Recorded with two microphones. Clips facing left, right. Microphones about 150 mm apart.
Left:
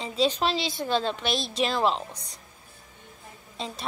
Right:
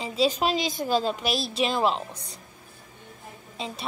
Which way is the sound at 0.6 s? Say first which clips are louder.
Right 2 dB; 45° right (ahead or behind).